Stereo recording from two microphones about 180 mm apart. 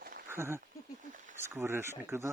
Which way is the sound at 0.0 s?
50° right (ahead or behind).